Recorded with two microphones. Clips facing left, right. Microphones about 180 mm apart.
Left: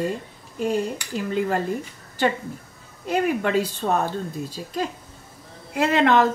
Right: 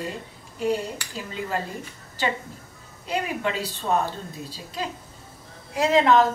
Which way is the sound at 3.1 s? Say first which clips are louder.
Left 6 dB; 50° left (ahead or behind).